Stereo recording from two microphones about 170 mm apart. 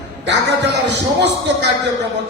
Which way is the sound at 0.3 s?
90° right.